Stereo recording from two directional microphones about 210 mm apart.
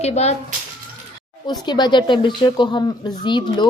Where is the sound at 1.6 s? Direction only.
20° left (ahead or behind).